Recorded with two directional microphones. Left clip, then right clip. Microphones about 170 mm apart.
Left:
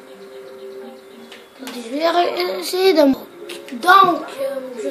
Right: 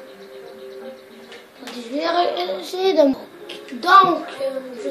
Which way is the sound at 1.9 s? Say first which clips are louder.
Left 3 dB; 30° left (ahead or behind).